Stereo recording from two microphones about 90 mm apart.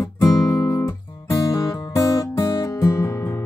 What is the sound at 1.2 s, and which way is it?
Music, 40° left (ahead or behind).